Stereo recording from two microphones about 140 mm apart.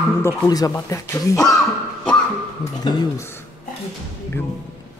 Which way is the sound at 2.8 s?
30° left (ahead or behind).